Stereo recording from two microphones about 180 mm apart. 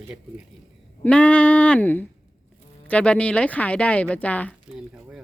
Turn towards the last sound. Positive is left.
turn(degrees=10)  # may be behind; listen again after turning